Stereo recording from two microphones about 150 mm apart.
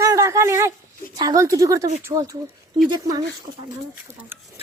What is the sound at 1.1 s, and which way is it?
A woman's voice, 25° right (ahead or behind).